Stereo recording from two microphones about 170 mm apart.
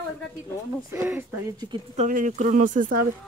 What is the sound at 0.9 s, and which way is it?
Speech, 10° right (ahead or behind).